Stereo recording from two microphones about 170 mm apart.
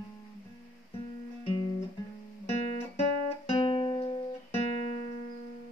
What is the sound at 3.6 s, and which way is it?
Music, 35° left (ahead or behind).